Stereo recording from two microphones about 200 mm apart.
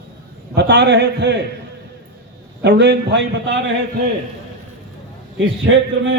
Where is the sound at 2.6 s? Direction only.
60° right (ahead or behind).